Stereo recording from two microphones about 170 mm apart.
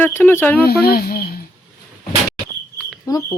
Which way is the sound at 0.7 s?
65° left (ahead or behind).